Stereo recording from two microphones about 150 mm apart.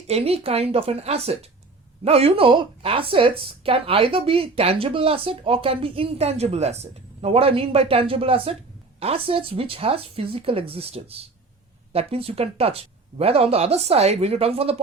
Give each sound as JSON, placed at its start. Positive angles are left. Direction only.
{"t": 0.1, "sound": "a woman's voice", "side_deg": -40}